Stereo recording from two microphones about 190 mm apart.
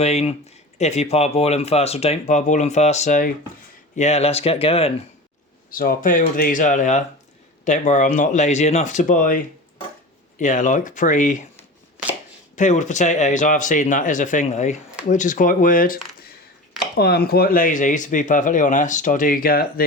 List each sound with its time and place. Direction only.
0.0 s speech: 35° left (ahead or behind)
5.7 s speech: 50° left (ahead or behind)
12.5 s speech: 40° left (ahead or behind)
17.0 s speech: 55° left (ahead or behind)